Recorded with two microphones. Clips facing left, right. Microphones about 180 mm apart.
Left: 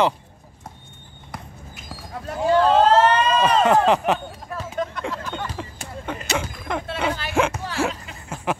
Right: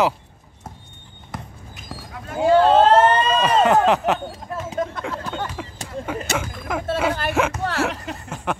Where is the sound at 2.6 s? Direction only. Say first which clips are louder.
Right 1 dB; 30° right (ahead or behind).